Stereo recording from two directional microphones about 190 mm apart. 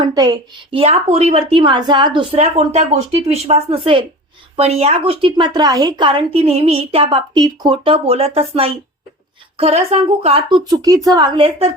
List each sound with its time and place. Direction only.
0.1 s a woman's voice: 20° right (ahead or behind)
10.6 s a woman's voice: 20° right (ahead or behind)